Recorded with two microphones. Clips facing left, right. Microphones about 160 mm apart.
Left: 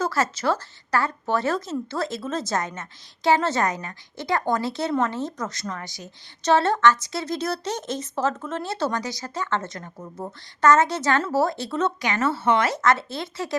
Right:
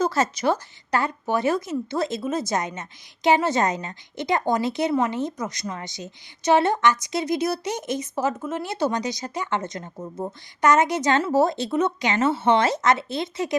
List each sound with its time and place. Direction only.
0.0 s a woman's voice: 20° right (ahead or behind)